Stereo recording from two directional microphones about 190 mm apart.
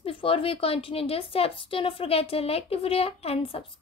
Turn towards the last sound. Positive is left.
turn(degrees=30)  # may be behind; listen again after turning